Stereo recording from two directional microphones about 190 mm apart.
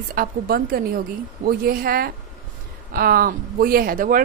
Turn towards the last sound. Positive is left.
turn(degrees=-45)  # may be behind; listen again after turning